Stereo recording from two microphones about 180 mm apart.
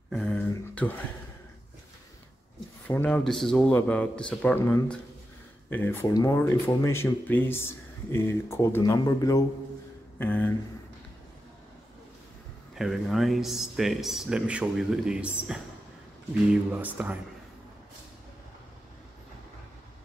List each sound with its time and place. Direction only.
0.1 s a sound: 5° left (ahead or behind)
2.9 s speech: 5° left (ahead or behind)
10.1 s speech: 10° left (ahead or behind)
12.7 s speech: centre (ahead or behind)
16.7 s speech: 10° right (ahead or behind)